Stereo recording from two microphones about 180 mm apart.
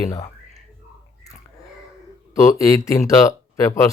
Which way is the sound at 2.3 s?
15° left (ahead or behind).